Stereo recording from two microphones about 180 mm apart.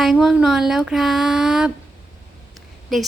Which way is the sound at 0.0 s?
Centre (ahead or behind).